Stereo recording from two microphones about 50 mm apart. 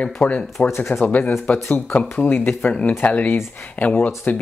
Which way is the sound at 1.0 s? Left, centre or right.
Left.